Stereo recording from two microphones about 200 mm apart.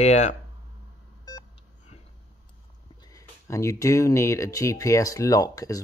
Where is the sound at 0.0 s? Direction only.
35° left (ahead or behind).